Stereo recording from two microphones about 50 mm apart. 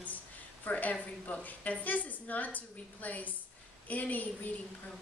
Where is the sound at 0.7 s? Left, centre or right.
Left.